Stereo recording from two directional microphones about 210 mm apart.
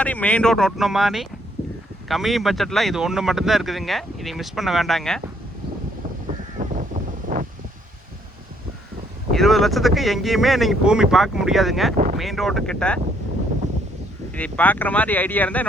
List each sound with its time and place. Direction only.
0.0 s speech: 5° left (ahead or behind)
6.6 s a sound: 40° right (ahead or behind)
7.3 s wind: 40° right (ahead or behind)
9.3 s speech: centre (ahead or behind)
14.3 s speech: 5° left (ahead or behind)